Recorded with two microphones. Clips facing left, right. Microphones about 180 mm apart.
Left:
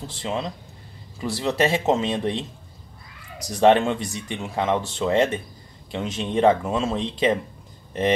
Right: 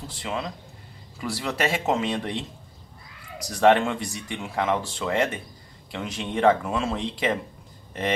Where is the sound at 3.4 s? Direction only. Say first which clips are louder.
Left 2 dB; 20° left (ahead or behind).